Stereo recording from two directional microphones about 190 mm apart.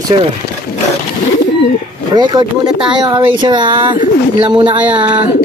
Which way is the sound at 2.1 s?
20° right (ahead or behind).